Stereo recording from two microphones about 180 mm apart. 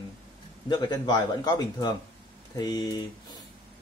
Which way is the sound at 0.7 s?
25° left (ahead or behind).